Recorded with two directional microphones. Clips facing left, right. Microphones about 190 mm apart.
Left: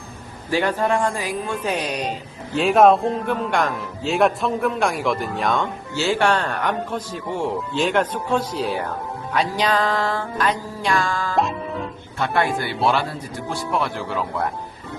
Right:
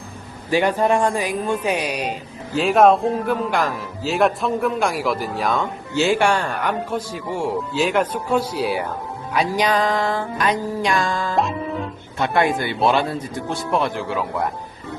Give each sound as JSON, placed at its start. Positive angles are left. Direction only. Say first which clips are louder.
{"t": 0.5, "sound": "speech", "louder": "right 3 dB", "side_deg": -15}
{"t": 5.9, "sound": "speech", "louder": "right 2 dB", "side_deg": -15}
{"t": 11.3, "sound": "music", "louder": "left 1 dB", "side_deg": 0}
{"t": 12.2, "sound": "speech", "louder": "right 2 dB", "side_deg": -15}